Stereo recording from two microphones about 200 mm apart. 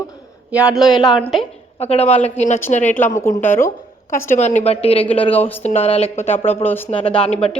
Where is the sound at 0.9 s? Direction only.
20° left (ahead or behind).